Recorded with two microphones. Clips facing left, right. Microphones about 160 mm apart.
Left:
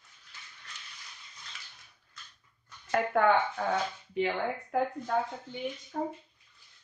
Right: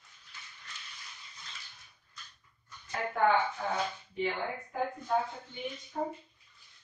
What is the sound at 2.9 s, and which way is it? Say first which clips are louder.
Speech: left 3 dB; 65° left (ahead or behind).